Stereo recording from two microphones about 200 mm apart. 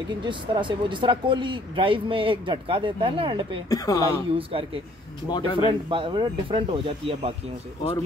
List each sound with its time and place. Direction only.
0.2 s speech: 25° right (ahead or behind)
3.7 s speech: 15° left (ahead or behind)
4.4 s speech: 25° right (ahead or behind)
5.3 s speech: 25° left (ahead or behind)
5.7 s speech: 25° right (ahead or behind)